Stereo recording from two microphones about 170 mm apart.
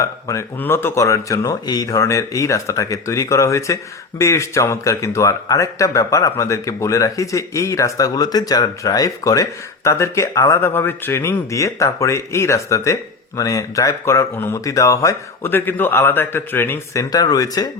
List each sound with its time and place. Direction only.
0.0 s speech: 15° left (ahead or behind)